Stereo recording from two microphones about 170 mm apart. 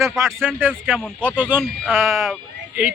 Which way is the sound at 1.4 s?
10° right (ahead or behind).